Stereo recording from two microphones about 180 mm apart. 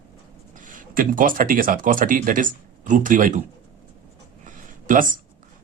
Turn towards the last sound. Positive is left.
turn(degrees=-45)  # may be behind; listen again after turning